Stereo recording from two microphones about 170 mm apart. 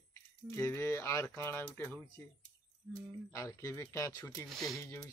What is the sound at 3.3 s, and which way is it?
Speech, 15° left (ahead or behind).